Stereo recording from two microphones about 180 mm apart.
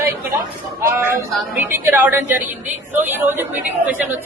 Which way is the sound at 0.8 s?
15° right (ahead or behind).